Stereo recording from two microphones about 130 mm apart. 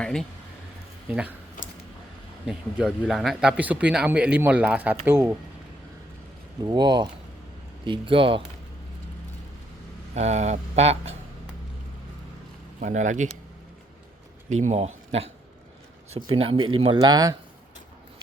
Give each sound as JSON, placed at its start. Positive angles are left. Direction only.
{"t": 0.0, "sound": "a man's voice", "side_deg": 5}
{"t": 1.0, "sound": "speech", "side_deg": -10}
{"t": 2.5, "sound": "a man's voice", "side_deg": -5}
{"t": 6.6, "sound": "speech", "side_deg": -35}
{"t": 10.2, "sound": "speech", "side_deg": -60}
{"t": 12.8, "sound": "speech", "side_deg": -70}
{"t": 14.6, "sound": "speech", "side_deg": -65}
{"t": 17.0, "sound": "speech", "side_deg": -30}